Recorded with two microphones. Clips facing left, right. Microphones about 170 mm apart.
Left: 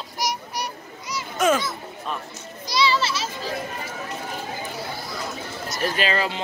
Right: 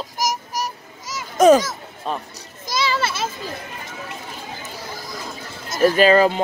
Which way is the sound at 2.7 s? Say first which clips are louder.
Even; 45° right (ahead or behind).